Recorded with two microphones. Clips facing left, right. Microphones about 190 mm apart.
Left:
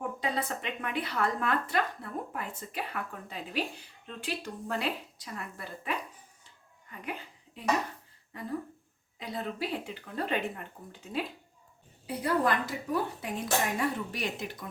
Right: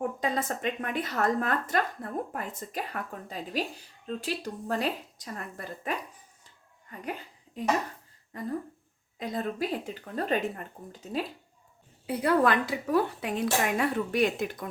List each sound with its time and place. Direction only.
0.2 s speech: 45° right (ahead or behind)
7.0 s a sound: 40° right (ahead or behind)
9.1 s speech: 45° right (ahead or behind)
12.0 s speech: 65° right (ahead or behind)